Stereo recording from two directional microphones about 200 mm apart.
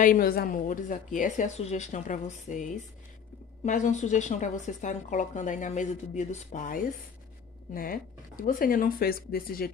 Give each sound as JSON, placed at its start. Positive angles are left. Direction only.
{"t": 0.0, "sound": "a woman's voice", "side_deg": 45}